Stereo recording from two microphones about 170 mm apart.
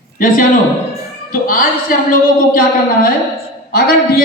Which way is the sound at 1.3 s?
55° left (ahead or behind).